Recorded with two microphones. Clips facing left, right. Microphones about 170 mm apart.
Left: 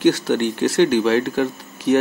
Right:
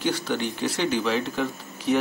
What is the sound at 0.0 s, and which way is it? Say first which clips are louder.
Speech: left 9 dB; 65° left (ahead or behind).